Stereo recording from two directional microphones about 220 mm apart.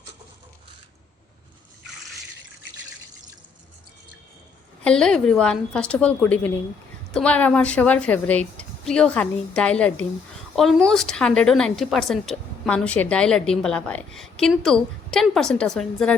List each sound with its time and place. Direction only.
4.8 s speech: 5° left (ahead or behind)